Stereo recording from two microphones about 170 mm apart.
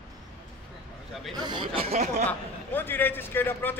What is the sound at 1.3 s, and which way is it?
Chuckle, 25° right (ahead or behind).